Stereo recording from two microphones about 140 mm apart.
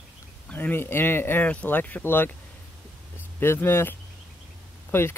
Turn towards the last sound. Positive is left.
turn(degrees=15)  # may be behind; listen again after turning